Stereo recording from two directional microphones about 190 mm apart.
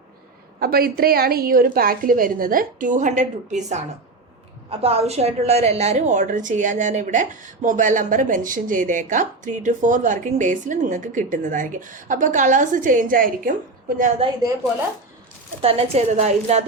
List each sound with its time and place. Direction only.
0.6 s a woman's voice: 50° right (ahead or behind)
15.6 s a woman's voice: 30° right (ahead or behind)